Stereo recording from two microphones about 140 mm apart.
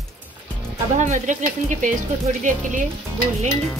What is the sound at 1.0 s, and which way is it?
Speech, 65° right (ahead or behind).